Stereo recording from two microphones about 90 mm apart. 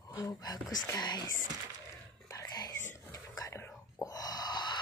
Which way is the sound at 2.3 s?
40° left (ahead or behind).